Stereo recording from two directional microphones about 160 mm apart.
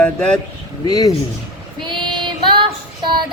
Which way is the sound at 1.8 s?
30° right (ahead or behind).